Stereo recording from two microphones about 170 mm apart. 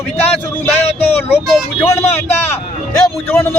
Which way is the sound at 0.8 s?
35° left (ahead or behind).